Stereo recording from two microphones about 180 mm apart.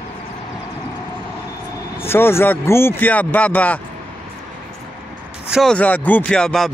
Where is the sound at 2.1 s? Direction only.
15° left (ahead or behind).